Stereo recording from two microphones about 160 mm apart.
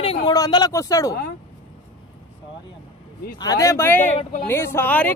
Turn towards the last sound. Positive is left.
turn(degrees=10)  # may be behind; listen again after turning